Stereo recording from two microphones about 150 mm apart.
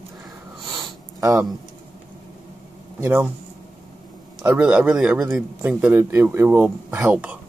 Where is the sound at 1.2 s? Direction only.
20° right (ahead or behind).